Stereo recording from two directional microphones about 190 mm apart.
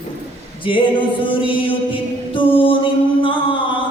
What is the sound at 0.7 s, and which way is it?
Music, 25° left (ahead or behind).